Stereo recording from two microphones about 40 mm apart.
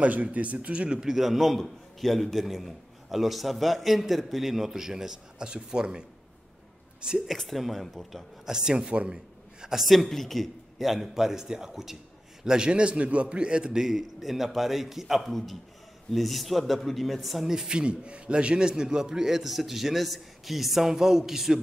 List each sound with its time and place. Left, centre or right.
0.0 s speech: right
1.1 s a man's voice: centre
7.3 s a man's voice: centre
8.5 s a man's voice: centre
9.8 s a man's voice: centre
12.4 s a man's voice: right
13.8 s a man's voice: centre
15.2 s a man's voice: centre
17.7 s a man's voice: right; by 21.5 s centre